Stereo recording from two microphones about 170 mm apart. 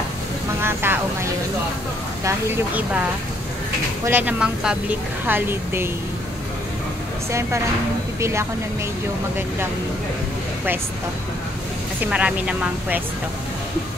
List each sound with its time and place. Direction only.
0.6 s a woman's voice: 15° right (ahead or behind)
8.2 s a woman's voice: 15° right (ahead or behind)
12.1 s speech: 5° right (ahead or behind)